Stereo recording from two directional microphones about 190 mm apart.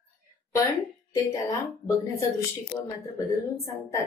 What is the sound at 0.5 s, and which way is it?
Speech, 15° left (ahead or behind).